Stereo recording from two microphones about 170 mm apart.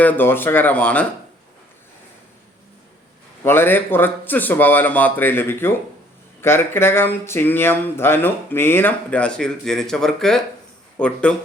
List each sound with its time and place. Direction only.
0.0 s speech: 10° left (ahead or behind)
3.4 s speech: 15° left (ahead or behind)